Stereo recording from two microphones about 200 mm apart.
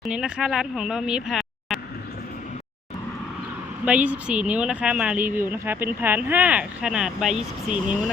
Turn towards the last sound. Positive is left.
turn(degrees=-5)  # may be behind; listen again after turning